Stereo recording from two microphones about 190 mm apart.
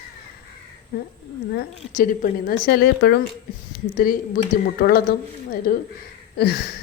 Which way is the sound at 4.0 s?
50° left (ahead or behind).